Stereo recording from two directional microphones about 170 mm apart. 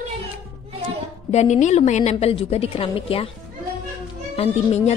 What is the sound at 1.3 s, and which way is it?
A woman's voice, 45° left (ahead or behind).